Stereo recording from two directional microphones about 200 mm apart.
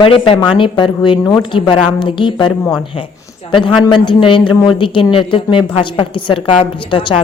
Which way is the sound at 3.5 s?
25° left (ahead or behind).